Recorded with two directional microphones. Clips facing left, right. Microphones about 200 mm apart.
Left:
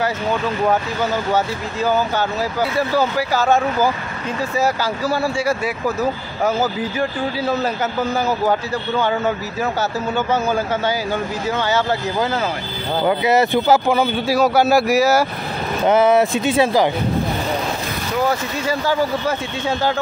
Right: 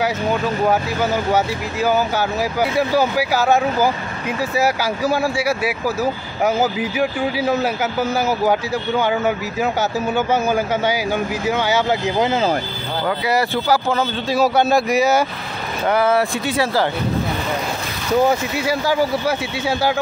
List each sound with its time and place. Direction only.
1.3 s a man's voice: 10° right (ahead or behind)
13.0 s speech: 20° left (ahead or behind)
14.3 s speech: centre (ahead or behind)
15.8 s speech: 20° left (ahead or behind)
18.7 s a man's voice: 10° right (ahead or behind)